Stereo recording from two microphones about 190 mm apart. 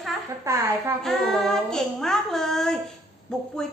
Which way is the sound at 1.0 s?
Centre (ahead or behind).